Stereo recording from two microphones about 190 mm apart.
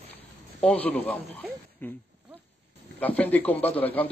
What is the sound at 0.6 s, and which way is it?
Speech, 5° left (ahead or behind).